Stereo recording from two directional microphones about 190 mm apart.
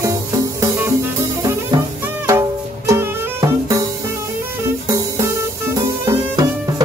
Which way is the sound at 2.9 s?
15° right (ahead or behind).